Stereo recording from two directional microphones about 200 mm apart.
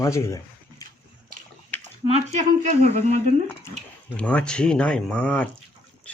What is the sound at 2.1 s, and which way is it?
Speech, 30° right (ahead or behind).